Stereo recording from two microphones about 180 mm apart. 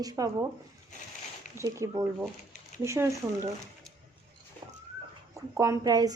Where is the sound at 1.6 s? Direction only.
15° right (ahead or behind).